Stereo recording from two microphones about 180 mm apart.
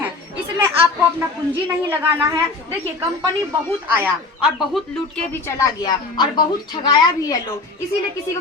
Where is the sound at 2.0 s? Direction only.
15° right (ahead or behind).